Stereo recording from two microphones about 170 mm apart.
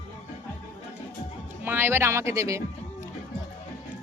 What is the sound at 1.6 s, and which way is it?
A woman's voice, 10° right (ahead or behind).